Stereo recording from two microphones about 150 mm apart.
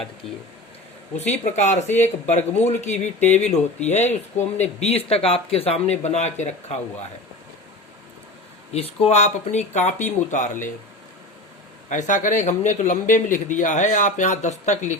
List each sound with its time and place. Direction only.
1.3 s speech: 50° left (ahead or behind)
8.7 s speech: 45° left (ahead or behind)
11.9 s speech: 55° left (ahead or behind)